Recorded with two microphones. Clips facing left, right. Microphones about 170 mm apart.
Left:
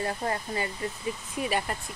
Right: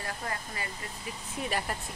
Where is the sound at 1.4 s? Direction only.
Centre (ahead or behind).